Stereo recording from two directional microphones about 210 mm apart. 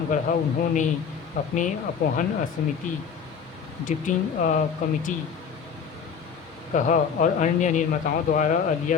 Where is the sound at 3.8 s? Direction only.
40° left (ahead or behind).